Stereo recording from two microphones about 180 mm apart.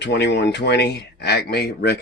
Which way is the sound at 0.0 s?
70° left (ahead or behind).